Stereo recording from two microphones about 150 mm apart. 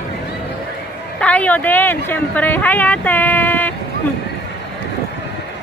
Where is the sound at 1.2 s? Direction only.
10° left (ahead or behind).